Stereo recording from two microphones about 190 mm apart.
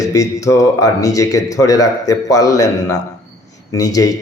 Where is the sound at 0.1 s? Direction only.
15° left (ahead or behind).